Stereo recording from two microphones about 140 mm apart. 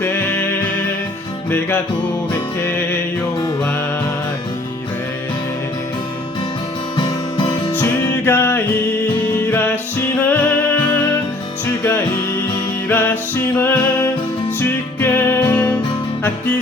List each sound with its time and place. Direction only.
0.0 s music: 15° left (ahead or behind)
6.9 s music: 35° left (ahead or behind)
7.8 s music: 15° left (ahead or behind)
10.2 s music: 10° left (ahead or behind)
12.9 s music: 15° left (ahead or behind)